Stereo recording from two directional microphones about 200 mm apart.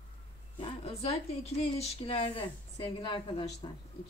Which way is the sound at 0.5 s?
30° left (ahead or behind).